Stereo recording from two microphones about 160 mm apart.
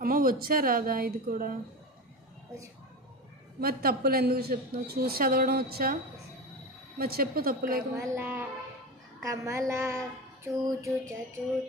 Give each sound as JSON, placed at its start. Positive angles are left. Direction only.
{"t": 0.0, "sound": "a woman's voice", "side_deg": -60}
{"t": 3.6, "sound": "a man's voice", "side_deg": -70}
{"t": 7.0, "sound": "a man's voice", "side_deg": -70}
{"t": 8.0, "sound": "a woman's voice", "side_deg": -15}
{"t": 9.2, "sound": "a sound", "side_deg": -20}